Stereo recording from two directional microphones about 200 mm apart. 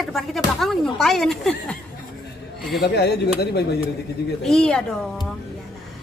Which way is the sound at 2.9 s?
55° left (ahead or behind).